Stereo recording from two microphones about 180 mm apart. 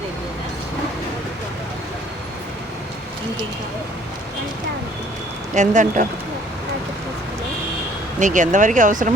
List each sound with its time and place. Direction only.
5.5 s speech: 45° right (ahead or behind)
8.2 s speech: 45° right (ahead or behind)